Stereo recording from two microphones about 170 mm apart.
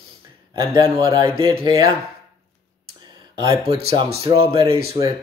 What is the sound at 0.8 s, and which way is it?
Speech, 30° right (ahead or behind).